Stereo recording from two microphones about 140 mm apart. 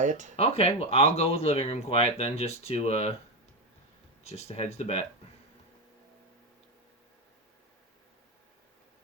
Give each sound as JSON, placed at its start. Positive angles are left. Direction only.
{"t": 0.0, "sound": "speech", "side_deg": -60}
{"t": 0.3, "sound": "speech", "side_deg": 45}
{"t": 4.2, "sound": "speech", "side_deg": 50}